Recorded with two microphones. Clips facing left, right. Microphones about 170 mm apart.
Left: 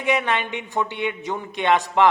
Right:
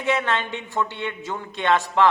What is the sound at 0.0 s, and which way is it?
A woman's voice, 15° left (ahead or behind).